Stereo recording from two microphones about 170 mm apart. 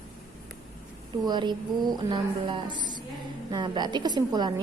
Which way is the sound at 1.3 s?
25° right (ahead or behind).